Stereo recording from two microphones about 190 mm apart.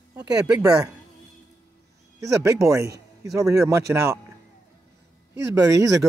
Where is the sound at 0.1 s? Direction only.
5° right (ahead or behind).